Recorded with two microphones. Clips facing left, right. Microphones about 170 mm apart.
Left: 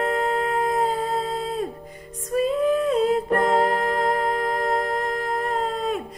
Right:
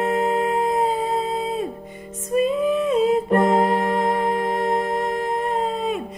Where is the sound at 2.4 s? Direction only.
Centre (ahead or behind).